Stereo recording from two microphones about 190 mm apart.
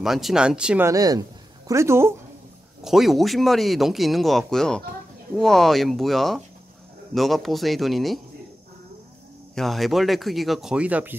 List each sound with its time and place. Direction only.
0.0 s speech: centre (ahead or behind)
0.8 s speech: 20° right (ahead or behind)
2.8 s speech: centre (ahead or behind)
9.6 s speech: centre (ahead or behind)